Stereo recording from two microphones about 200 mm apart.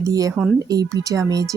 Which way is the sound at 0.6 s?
20° right (ahead or behind).